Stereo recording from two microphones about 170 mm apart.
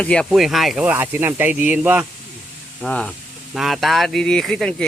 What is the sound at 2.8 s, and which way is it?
Speech, 5° left (ahead or behind).